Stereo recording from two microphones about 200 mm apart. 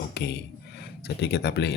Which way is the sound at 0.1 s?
55° left (ahead or behind).